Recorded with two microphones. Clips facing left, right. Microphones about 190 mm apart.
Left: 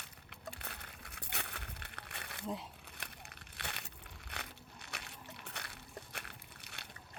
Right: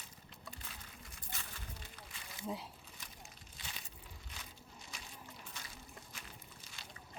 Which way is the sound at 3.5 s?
65° left (ahead or behind).